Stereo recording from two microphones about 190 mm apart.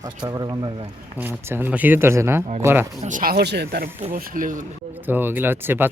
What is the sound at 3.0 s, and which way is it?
Speech, 45° right (ahead or behind).